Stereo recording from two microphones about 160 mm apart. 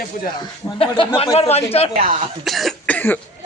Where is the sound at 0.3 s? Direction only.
30° left (ahead or behind).